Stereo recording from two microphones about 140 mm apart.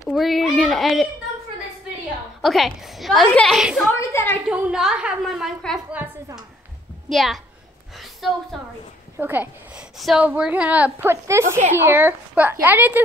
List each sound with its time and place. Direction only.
0.1 s a woman's voice: centre (ahead or behind)
2.4 s a woman's voice: centre (ahead or behind)
3.9 s a woman's voice: 15° left (ahead or behind)
4.5 s a woman's voice: 10° right (ahead or behind)
7.1 s a woman's voice: centre (ahead or behind)
8.0 s a sound: centre (ahead or behind)
9.2 s a woman's voice: 10° right (ahead or behind)